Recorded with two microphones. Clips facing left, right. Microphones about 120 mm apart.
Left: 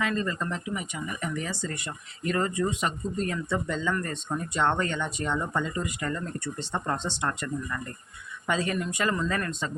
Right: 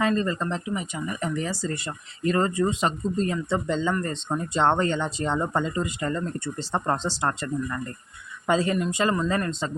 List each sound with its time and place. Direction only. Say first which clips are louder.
0.0 s speech: right 5 dB; 35° right (ahead or behind)